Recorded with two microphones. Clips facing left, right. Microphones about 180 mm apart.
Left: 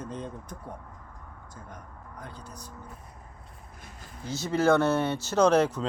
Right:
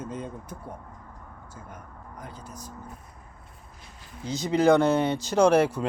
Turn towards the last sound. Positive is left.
turn(degrees=-10)  # may be behind; listen again after turning